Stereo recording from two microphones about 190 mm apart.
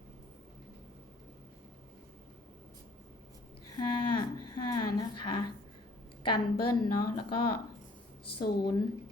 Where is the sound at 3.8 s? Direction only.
25° left (ahead or behind).